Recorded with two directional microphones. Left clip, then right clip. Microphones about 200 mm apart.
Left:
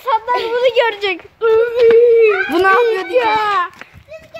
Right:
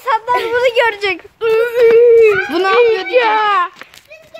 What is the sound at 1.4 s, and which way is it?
Female singing, 35° right (ahead or behind).